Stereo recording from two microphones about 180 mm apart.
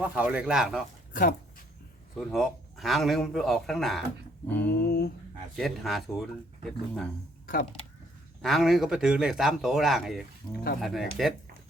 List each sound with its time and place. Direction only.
0.0 s speech: 5° right (ahead or behind)
1.1 s dog: 55° left (ahead or behind)
2.3 s speech: centre (ahead or behind)
4.4 s a sound: 10° left (ahead or behind)
4.7 s a sound: 60° left (ahead or behind)
5.5 s speech: centre (ahead or behind)
7.4 s speech: 55° left (ahead or behind)
8.4 s speech: centre (ahead or behind)
10.4 s speech: 25° left (ahead or behind)
10.8 s speech: centre (ahead or behind)